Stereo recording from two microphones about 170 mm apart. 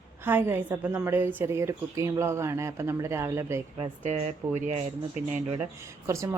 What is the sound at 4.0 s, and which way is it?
Speech, 45° right (ahead or behind).